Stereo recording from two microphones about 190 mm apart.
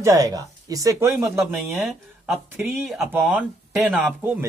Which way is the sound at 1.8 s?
Centre (ahead or behind).